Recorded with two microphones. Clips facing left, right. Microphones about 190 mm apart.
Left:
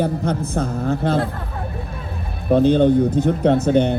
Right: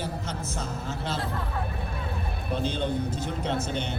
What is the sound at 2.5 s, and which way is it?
Speech, 55° left (ahead or behind).